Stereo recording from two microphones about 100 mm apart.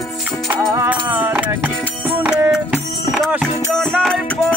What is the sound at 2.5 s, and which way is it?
Music, 5° right (ahead or behind).